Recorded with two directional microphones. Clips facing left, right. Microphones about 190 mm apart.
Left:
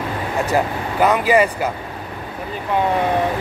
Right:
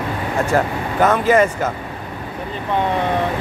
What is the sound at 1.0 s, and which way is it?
Speech, 15° left (ahead or behind).